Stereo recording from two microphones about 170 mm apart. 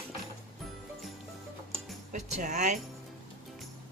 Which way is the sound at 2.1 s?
45° right (ahead or behind).